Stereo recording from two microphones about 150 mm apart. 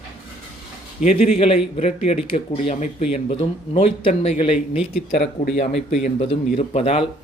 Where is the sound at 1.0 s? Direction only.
45° left (ahead or behind).